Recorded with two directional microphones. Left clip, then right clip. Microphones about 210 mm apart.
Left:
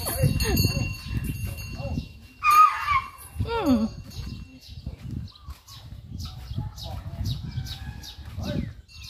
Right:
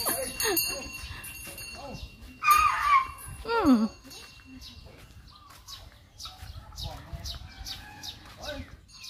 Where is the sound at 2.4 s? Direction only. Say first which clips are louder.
Left 2 dB; 5° right (ahead or behind).